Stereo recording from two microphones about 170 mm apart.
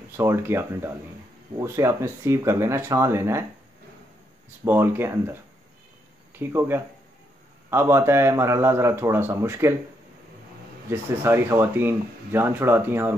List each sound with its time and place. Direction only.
0.2 s speech: 15° right (ahead or behind)
4.6 s speech: 15° right (ahead or behind)
10.9 s speech: 15° right (ahead or behind)